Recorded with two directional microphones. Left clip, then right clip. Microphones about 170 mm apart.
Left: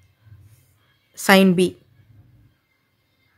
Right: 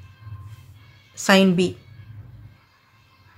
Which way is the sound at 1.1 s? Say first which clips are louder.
Left 2 dB; 40° left (ahead or behind).